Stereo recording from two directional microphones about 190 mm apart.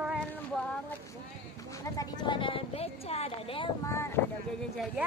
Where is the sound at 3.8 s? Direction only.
15° left (ahead or behind).